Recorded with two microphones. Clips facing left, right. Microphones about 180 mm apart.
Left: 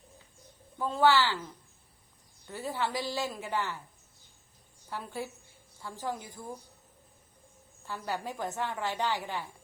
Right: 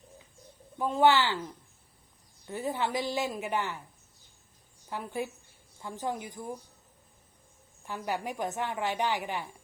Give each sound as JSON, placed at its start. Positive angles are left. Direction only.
{"t": 0.8, "sound": "a woman's voice", "side_deg": -20}
{"t": 4.9, "sound": "a woman's voice", "side_deg": -15}
{"t": 7.9, "sound": "a woman's voice", "side_deg": -15}